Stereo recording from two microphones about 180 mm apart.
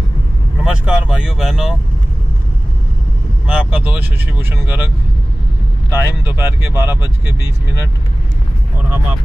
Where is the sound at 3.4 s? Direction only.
5° right (ahead or behind).